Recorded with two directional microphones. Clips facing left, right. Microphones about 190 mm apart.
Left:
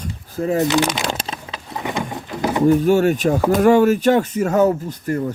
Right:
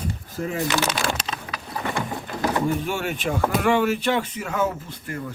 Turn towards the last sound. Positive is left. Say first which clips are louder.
# left 10 dB
turn(degrees=40)  # may be behind; listen again after turning